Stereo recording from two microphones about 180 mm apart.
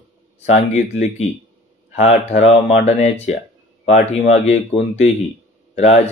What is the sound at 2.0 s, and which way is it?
Speech, 40° left (ahead or behind).